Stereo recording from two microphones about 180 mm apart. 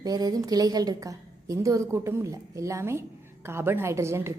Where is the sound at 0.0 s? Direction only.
20° right (ahead or behind).